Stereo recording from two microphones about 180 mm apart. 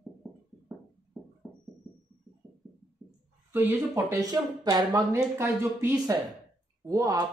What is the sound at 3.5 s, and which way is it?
Speech, 15° right (ahead or behind).